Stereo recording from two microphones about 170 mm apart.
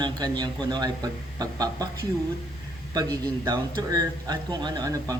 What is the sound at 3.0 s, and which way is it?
A man's voice, 20° right (ahead or behind).